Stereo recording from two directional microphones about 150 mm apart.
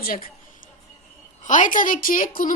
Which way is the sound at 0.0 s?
70° left (ahead or behind).